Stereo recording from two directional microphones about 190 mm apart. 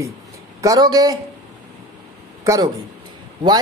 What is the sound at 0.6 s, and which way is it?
Speech, 20° right (ahead or behind).